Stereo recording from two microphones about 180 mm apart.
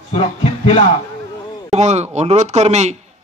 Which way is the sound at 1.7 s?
40° right (ahead or behind).